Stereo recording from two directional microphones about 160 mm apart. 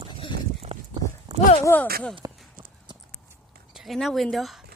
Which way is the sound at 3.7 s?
Centre (ahead or behind).